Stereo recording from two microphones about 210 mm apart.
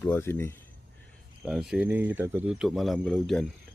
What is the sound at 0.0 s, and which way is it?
Speech, 10° left (ahead or behind).